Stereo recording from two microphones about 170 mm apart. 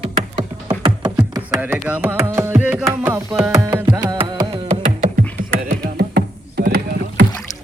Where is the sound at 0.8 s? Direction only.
25° right (ahead or behind).